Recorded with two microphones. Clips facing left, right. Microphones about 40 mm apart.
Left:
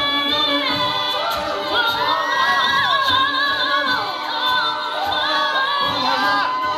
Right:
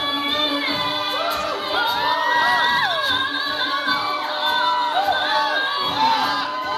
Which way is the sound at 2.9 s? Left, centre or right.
Left.